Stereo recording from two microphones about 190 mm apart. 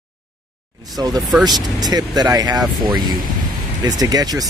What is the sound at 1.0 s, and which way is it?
Speech, 20° right (ahead or behind).